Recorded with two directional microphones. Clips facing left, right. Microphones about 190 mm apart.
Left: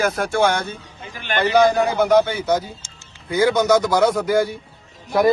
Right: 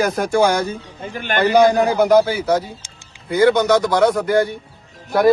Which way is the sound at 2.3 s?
Centre (ahead or behind).